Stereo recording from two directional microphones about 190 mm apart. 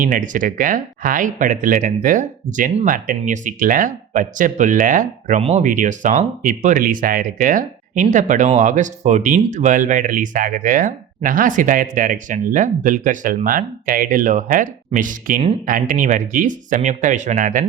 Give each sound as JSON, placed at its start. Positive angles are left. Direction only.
{"t": 0.0, "sound": "speech", "side_deg": -45}
{"t": 5.4, "sound": "speech", "side_deg": -30}